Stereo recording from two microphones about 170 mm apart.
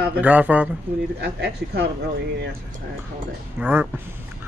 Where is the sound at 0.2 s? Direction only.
10° right (ahead or behind).